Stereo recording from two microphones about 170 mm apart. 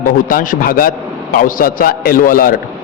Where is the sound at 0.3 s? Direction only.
55° left (ahead or behind).